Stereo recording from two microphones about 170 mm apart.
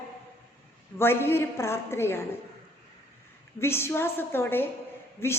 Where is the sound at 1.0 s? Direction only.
15° left (ahead or behind).